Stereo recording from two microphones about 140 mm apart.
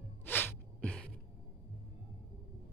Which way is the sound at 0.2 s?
15° left (ahead or behind).